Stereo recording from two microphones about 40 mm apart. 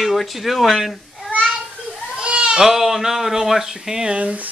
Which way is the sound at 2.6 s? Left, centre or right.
Centre.